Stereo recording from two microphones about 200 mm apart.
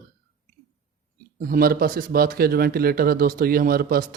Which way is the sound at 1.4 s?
45° right (ahead or behind).